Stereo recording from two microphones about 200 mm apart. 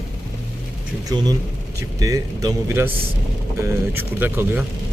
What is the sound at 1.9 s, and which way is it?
Speech, 15° right (ahead or behind).